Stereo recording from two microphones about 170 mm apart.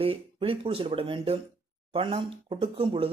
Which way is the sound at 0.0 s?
35° right (ahead or behind).